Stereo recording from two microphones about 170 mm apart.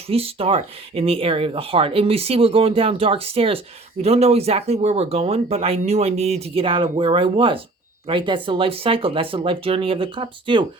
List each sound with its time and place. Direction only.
0.1 s speech: 35° right (ahead or behind)